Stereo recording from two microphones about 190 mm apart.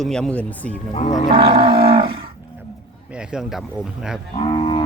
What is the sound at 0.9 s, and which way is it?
Speech, 40° left (ahead or behind).